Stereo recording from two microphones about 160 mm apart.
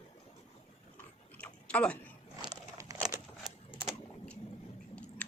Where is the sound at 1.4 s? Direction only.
5° left (ahead or behind).